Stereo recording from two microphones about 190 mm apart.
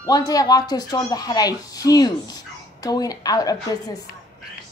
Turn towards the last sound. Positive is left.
turn(degrees=20)  # may be behind; listen again after turning